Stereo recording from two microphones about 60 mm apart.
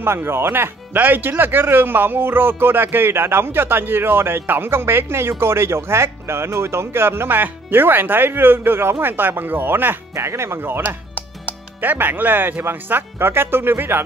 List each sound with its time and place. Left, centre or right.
0.0 s speech: right
10.1 s speech: right